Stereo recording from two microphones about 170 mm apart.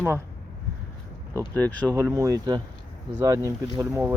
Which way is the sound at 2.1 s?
20° right (ahead or behind).